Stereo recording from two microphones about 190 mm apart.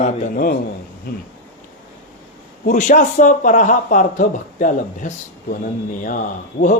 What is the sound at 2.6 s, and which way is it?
A man's voice, 45° left (ahead or behind).